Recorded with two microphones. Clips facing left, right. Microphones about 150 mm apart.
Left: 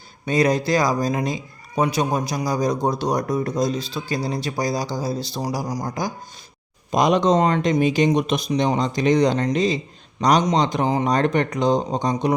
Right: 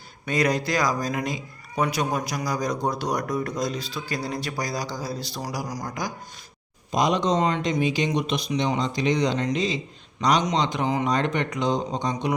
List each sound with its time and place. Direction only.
0.3 s a man's voice: 25° left (ahead or behind)
6.9 s speech: 55° left (ahead or behind)